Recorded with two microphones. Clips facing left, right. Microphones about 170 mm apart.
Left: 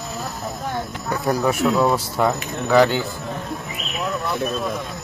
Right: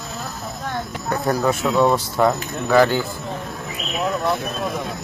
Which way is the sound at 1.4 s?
10° left (ahead or behind).